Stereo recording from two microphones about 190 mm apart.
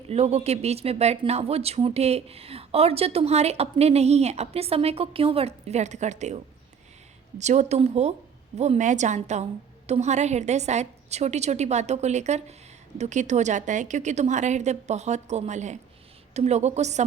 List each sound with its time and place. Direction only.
0.1 s speech: 35° right (ahead or behind)